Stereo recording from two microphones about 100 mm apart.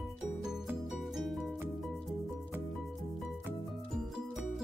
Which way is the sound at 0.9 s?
Centre (ahead or behind).